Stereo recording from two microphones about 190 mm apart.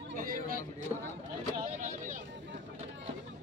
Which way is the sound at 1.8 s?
45° right (ahead or behind).